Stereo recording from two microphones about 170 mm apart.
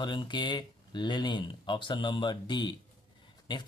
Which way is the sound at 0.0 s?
25° left (ahead or behind).